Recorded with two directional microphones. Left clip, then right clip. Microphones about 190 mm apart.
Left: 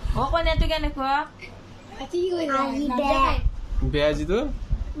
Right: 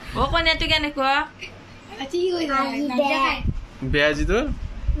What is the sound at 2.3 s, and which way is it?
A man's voice, 5° left (ahead or behind).